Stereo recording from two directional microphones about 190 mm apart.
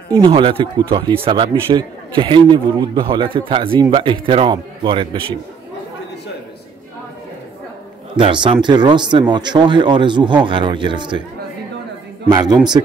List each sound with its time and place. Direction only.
0.1 s speech: 25° right (ahead or behind)
8.2 s speech: 25° right (ahead or behind)
12.3 s speech: 20° right (ahead or behind)